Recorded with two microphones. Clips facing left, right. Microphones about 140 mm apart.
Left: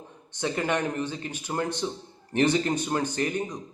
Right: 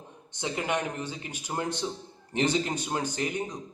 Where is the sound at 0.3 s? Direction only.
15° right (ahead or behind).